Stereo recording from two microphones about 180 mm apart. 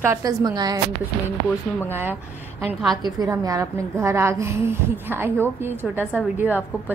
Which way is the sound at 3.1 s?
20° right (ahead or behind).